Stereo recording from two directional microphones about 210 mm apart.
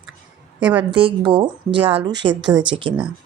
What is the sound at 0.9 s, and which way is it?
Speech, 25° right (ahead or behind).